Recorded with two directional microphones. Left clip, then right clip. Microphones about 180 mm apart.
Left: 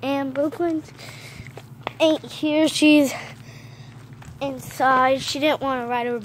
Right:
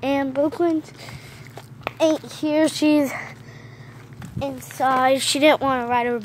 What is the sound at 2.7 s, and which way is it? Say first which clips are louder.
Speech: left 3 dB; 25° left (ahead or behind).